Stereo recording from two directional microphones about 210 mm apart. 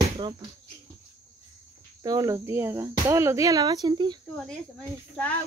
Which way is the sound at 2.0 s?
15° right (ahead or behind).